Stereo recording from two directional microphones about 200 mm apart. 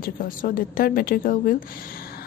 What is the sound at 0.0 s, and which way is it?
A woman's voice, 45° left (ahead or behind).